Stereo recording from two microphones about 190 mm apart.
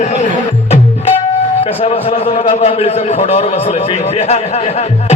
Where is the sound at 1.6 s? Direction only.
30° left (ahead or behind).